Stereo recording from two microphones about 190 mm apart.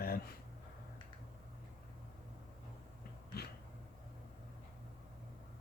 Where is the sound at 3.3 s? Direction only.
55° left (ahead or behind).